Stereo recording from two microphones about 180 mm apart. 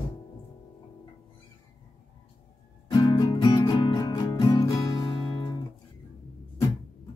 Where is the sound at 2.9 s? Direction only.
20° left (ahead or behind).